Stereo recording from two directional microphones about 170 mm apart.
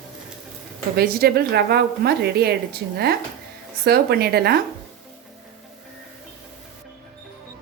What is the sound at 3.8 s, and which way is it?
Speech, 65° right (ahead or behind).